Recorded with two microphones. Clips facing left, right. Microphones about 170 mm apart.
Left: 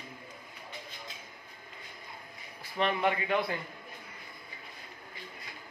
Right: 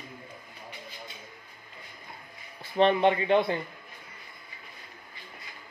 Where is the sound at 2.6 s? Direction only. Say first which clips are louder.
Right 7 dB; 25° right (ahead or behind).